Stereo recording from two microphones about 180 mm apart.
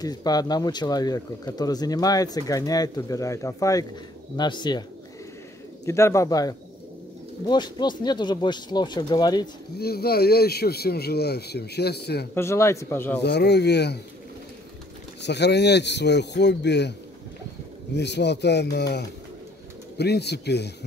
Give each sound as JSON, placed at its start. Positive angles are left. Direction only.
{"t": 0.0, "sound": "speech", "side_deg": 20}
{"t": 5.9, "sound": "a man's voice", "side_deg": 15}
{"t": 9.8, "sound": "speech", "side_deg": 60}
{"t": 12.4, "sound": "a man's voice", "side_deg": 15}
{"t": 13.2, "sound": "a man's voice", "side_deg": 65}
{"t": 15.2, "sound": "a man's voice", "side_deg": 70}
{"t": 17.9, "sound": "a man's voice", "side_deg": 70}